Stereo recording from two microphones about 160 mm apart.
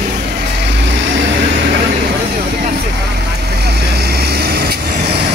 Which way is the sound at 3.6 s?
90° right.